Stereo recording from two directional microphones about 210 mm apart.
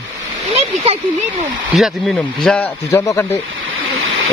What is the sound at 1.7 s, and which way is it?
Speech, centre (ahead or behind).